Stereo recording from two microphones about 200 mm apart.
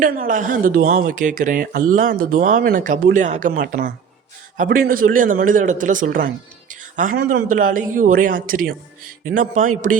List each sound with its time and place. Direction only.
0.0 s a man's voice: 45° right (ahead or behind)